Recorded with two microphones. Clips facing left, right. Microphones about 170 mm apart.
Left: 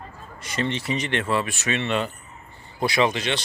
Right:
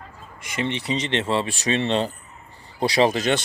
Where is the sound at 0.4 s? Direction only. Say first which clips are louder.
Even; 15° right (ahead or behind).